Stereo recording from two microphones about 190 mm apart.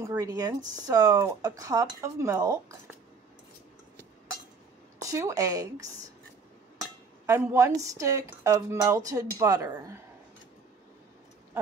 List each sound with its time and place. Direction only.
0.0 s speech: 20° right (ahead or behind)
5.0 s speech: 15° right (ahead or behind)